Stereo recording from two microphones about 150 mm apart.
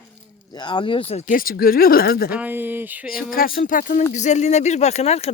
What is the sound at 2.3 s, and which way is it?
Speech, 10° right (ahead or behind).